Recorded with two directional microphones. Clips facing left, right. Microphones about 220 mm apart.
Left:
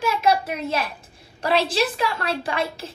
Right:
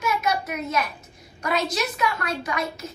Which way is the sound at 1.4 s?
30° left (ahead or behind).